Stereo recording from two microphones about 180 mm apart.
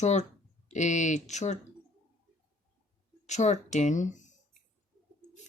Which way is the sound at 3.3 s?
40° left (ahead or behind).